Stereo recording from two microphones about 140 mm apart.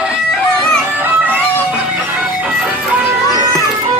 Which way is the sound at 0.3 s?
5° left (ahead or behind).